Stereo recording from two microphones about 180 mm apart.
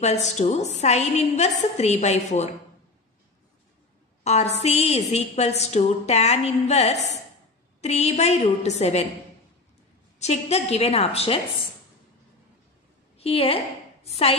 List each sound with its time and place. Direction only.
0.0 s a woman's voice: 40° left (ahead or behind)
4.2 s a woman's voice: 40° left (ahead or behind)
10.1 s a woman's voice: 40° left (ahead or behind)
13.2 s a woman's voice: 35° left (ahead or behind)